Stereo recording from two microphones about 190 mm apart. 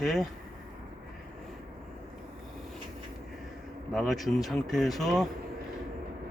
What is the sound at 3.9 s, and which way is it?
Speech, centre (ahead or behind).